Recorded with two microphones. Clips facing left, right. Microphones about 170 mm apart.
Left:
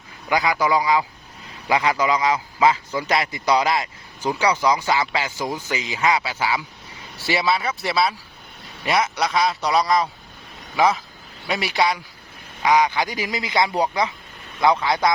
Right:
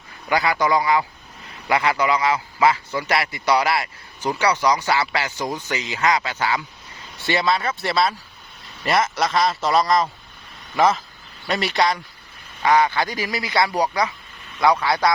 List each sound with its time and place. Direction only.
0.3 s a man's voice: 15° left (ahead or behind)